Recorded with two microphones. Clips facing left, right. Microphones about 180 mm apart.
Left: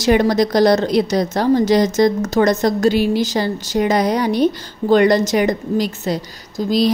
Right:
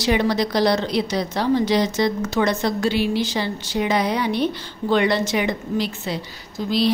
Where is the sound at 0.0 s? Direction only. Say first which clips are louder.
Left 5 dB; 45° left (ahead or behind).